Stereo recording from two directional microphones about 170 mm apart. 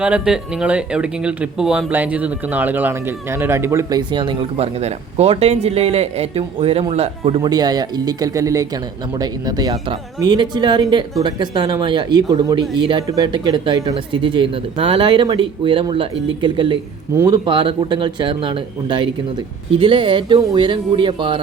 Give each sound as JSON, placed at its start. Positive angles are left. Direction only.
{"t": 0.0, "sound": "speech", "side_deg": -5}